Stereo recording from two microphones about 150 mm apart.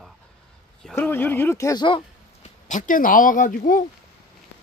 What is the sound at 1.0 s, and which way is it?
Speech, 15° left (ahead or behind).